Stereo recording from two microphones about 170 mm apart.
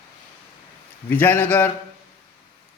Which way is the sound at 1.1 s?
10° left (ahead or behind).